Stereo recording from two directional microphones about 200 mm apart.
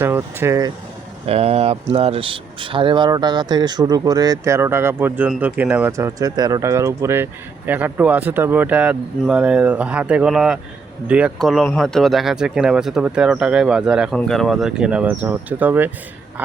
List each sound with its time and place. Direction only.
0.0 s speech: 10° right (ahead or behind)
1.3 s speech: 30° right (ahead or behind); by 15.9 s 10° right (ahead or behind)